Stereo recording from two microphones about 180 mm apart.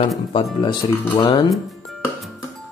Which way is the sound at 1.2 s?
20° left (ahead or behind).